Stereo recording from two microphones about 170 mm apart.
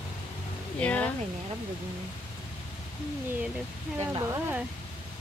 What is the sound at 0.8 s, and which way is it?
Speech, 10° left (ahead or behind).